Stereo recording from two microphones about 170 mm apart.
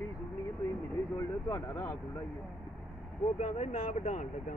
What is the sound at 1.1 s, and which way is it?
Speech, 15° left (ahead or behind).